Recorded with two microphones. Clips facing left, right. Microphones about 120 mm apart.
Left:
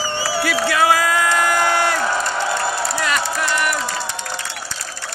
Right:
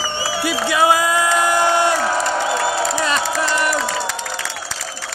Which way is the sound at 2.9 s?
25° right (ahead or behind).